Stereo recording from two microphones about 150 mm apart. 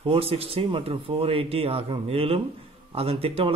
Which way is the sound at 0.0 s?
40° right (ahead or behind).